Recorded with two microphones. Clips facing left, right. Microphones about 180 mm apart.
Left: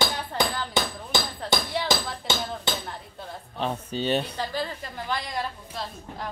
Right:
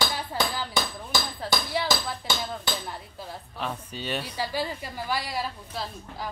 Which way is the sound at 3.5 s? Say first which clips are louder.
Left 6 dB; 30° left (ahead or behind).